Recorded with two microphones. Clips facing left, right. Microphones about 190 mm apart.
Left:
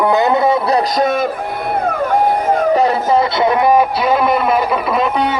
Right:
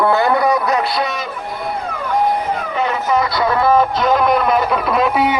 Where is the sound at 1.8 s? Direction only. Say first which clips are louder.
Left 3 dB; 55° left (ahead or behind); by 5.2 s centre (ahead or behind).